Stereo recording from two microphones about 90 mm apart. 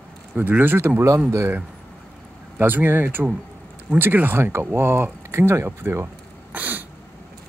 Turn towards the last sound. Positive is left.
turn(degrees=-20)  # may be behind; listen again after turning